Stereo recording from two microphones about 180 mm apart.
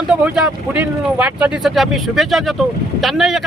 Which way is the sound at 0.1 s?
5° right (ahead or behind).